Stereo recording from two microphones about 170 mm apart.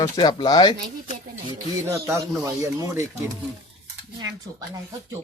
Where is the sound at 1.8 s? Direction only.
15° right (ahead or behind).